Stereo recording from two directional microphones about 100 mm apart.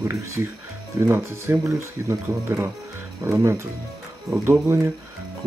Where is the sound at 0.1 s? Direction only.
30° right (ahead or behind).